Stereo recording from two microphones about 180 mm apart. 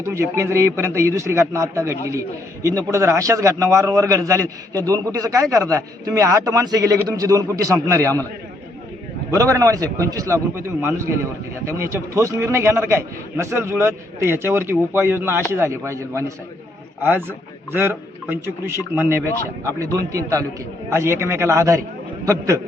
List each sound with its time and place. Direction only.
0.0 s a man's voice: 15° right (ahead or behind)
9.3 s a man's voice: 15° right (ahead or behind)